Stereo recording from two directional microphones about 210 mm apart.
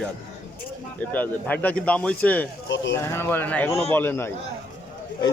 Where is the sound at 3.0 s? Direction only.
10° left (ahead or behind).